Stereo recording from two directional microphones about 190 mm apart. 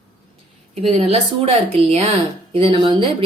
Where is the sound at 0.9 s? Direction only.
30° right (ahead or behind).